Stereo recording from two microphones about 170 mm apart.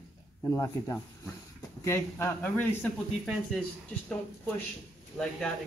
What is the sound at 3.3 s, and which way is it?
Speech, centre (ahead or behind).